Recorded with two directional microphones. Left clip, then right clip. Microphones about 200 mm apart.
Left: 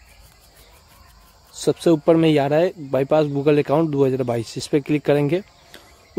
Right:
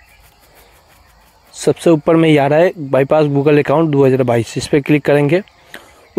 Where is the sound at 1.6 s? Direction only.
15° right (ahead or behind).